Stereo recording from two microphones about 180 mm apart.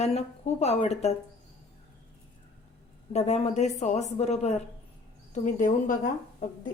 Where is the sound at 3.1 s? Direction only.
35° left (ahead or behind).